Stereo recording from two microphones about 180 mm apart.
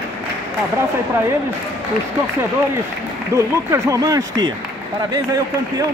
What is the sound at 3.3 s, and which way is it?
Speech, 15° right (ahead or behind).